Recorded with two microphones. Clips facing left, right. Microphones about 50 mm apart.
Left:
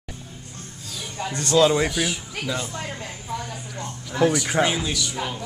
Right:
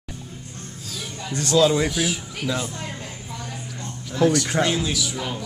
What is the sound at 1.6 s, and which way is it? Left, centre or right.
Speech, centre.